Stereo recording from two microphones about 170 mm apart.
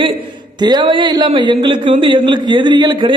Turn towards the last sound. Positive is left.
turn(degrees=-30)  # may be behind; listen again after turning